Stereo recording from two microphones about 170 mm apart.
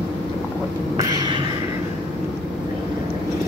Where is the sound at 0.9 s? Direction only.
20° right (ahead or behind).